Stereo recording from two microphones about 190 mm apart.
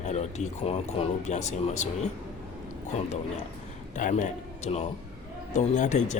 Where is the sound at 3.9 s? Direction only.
40° left (ahead or behind).